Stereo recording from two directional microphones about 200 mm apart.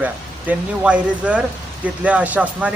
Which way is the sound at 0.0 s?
5° right (ahead or behind).